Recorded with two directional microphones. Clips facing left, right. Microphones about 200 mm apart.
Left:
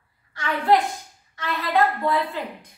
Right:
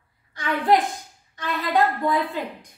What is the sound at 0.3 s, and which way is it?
A woman's voice, 15° right (ahead or behind).